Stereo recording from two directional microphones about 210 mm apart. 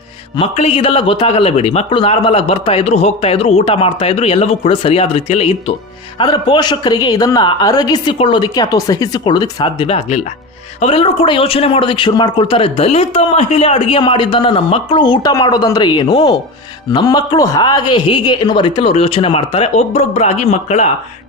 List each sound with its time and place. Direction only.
0.3 s speech: 30° left (ahead or behind)